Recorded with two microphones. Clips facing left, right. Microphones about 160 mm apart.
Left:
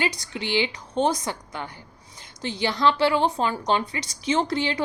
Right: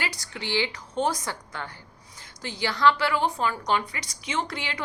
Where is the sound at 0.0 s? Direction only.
20° left (ahead or behind).